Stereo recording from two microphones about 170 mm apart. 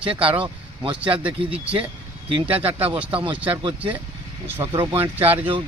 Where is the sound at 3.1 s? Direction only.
30° right (ahead or behind).